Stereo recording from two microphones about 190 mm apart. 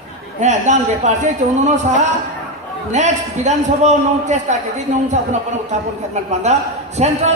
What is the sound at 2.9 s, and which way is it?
A man's voice, 40° right (ahead or behind).